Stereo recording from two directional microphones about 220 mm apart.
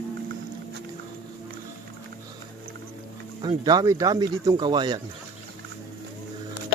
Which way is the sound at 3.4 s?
20° right (ahead or behind).